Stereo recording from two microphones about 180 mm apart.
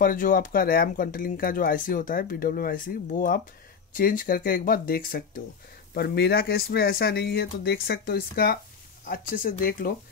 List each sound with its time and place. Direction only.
0.0 s speech: 50° left (ahead or behind)